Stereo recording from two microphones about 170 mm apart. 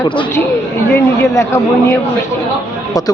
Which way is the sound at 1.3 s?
15° left (ahead or behind).